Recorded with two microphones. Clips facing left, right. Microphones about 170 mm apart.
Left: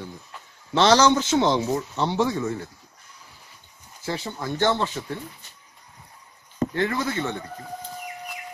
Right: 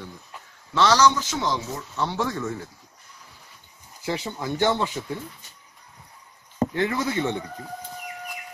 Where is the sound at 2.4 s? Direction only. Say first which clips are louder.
Left 3 dB; 5° left (ahead or behind).